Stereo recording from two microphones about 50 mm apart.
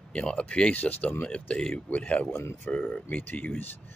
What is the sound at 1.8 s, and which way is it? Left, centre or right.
Speech, left.